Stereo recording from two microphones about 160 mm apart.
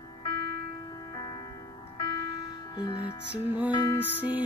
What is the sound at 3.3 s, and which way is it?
Music, 10° right (ahead or behind).